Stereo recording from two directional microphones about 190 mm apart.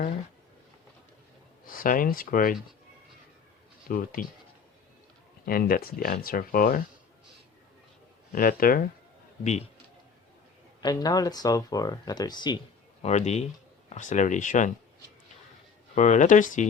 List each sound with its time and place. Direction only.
1.6 s speech: 50° left (ahead or behind)
3.8 s speech: 50° left (ahead or behind)
5.5 s speech: 50° left (ahead or behind)
8.3 s speech: 50° left (ahead or behind)
9.4 s speech: 35° left (ahead or behind)
10.8 s speech: 20° left (ahead or behind)
13.0 s speech: 35° left (ahead or behind)
16.0 s speech: 40° left (ahead or behind)